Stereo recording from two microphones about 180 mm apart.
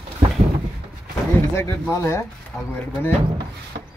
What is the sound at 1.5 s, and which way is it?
Speech, 15° left (ahead or behind).